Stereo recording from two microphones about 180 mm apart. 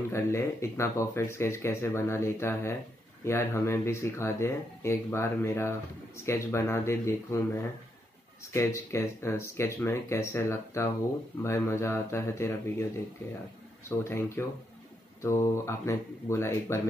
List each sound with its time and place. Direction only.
0.1 s speech: 15° left (ahead or behind)
8.5 s speech: 15° left (ahead or behind)
13.8 s speech: 15° left (ahead or behind)